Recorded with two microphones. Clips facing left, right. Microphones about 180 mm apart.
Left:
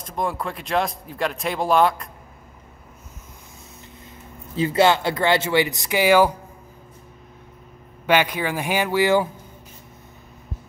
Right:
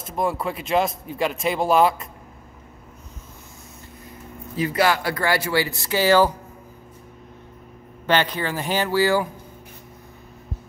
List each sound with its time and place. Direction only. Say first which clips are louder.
0.0 s speech: right 2 dB; centre (ahead or behind)
4.6 s speech: left 3 dB; 25° left (ahead or behind)
8.1 s speech: left 2 dB; 10° left (ahead or behind)